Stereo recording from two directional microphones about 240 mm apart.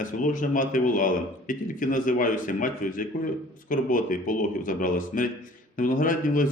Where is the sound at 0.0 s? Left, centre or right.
Left.